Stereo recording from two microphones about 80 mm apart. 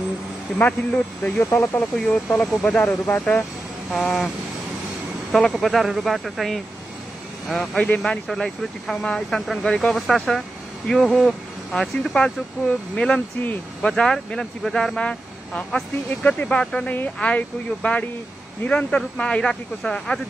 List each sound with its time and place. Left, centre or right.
0.6 s speech: centre
1.4 s speech: left
2.0 s speech: centre
3.9 s speech: centre
5.3 s speech: centre
10.9 s speech: centre
11.1 s speech: centre
13.8 s speech: centre